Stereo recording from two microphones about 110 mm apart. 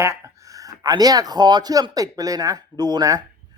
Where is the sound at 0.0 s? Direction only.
25° right (ahead or behind).